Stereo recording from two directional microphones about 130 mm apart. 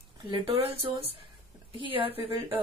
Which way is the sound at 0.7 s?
40° right (ahead or behind).